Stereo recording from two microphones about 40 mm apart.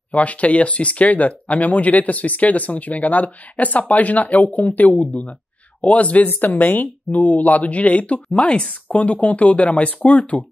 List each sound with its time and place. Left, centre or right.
0.1 s speech: left
6.2 s speech: left
8.8 s speech: left